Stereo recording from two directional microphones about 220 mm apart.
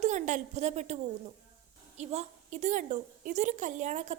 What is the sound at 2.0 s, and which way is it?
A woman's voice, 30° right (ahead or behind).